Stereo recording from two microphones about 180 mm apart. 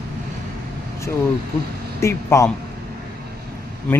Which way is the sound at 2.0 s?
15° left (ahead or behind).